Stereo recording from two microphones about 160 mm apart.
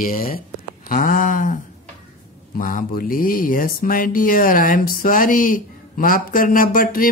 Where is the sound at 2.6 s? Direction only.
55° left (ahead or behind).